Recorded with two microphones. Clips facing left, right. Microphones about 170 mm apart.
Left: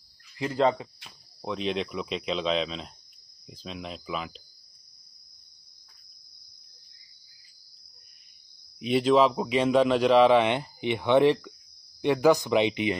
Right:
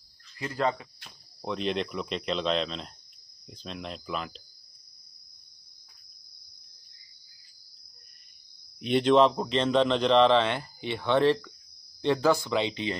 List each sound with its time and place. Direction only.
0.4 s speech: 20° left (ahead or behind)
0.9 s speech: centre (ahead or behind)
8.7 s a man's voice: 5° left (ahead or behind)